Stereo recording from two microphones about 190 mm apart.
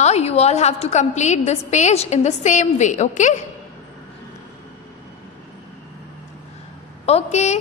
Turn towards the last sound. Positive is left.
turn(degrees=35)  # may be behind; listen again after turning